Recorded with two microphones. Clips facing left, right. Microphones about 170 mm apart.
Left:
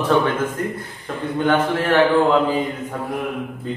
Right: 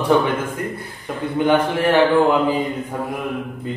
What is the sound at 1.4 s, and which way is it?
Speech, 15° right (ahead or behind).